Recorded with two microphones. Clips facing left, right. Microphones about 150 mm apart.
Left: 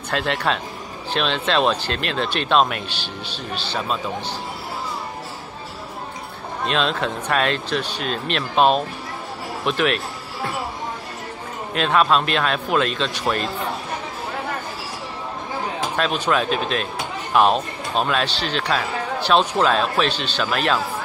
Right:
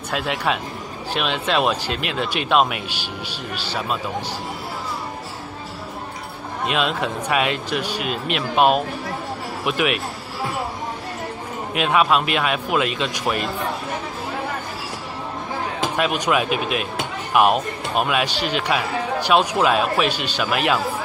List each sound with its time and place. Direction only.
0.1 s speech: 10° right (ahead or behind)
6.6 s speech: 10° right (ahead or behind)
11.7 s speech: 10° right (ahead or behind)
16.0 s speech: 10° right (ahead or behind)